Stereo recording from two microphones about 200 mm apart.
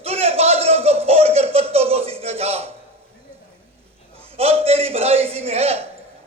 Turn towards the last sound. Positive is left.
turn(degrees=-30)  # may be behind; listen again after turning